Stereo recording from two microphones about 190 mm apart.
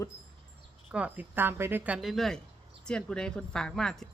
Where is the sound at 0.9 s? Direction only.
5° right (ahead or behind).